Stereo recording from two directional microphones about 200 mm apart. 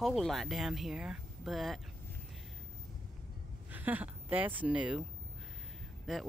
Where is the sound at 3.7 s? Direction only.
10° right (ahead or behind).